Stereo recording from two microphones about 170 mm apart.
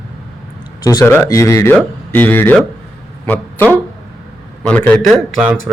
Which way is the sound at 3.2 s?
10° left (ahead or behind).